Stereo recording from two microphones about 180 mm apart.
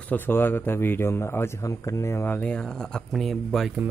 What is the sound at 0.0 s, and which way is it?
Speech, 10° left (ahead or behind).